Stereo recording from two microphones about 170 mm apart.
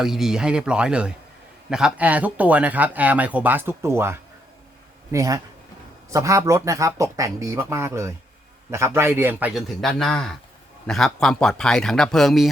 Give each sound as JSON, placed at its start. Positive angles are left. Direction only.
{"t": 0.0, "sound": "a man's voice", "side_deg": 0}